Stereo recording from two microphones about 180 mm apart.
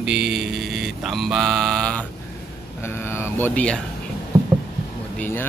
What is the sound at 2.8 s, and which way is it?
Speech, 15° left (ahead or behind).